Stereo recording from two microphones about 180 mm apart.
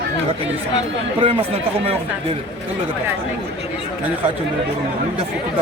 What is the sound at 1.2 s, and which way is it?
Speech, 35° right (ahead or behind).